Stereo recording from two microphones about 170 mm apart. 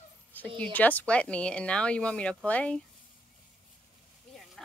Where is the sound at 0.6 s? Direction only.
10° left (ahead or behind).